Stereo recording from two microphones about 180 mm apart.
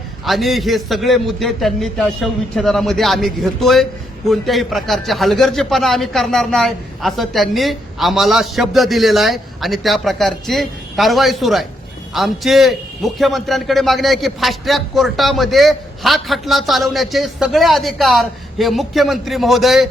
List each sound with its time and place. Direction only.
0.3 s a man's voice: centre (ahead or behind)